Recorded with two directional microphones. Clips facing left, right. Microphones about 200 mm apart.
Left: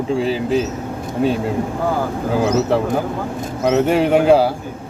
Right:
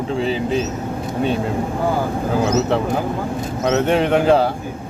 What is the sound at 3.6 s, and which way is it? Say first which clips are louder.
Speech: left 2 dB; 10° left (ahead or behind).